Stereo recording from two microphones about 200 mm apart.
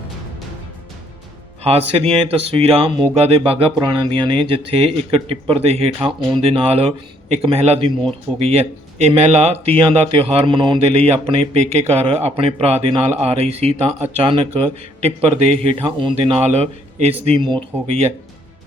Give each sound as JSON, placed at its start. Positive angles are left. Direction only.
{"t": 1.6, "sound": "a man's voice", "side_deg": -30}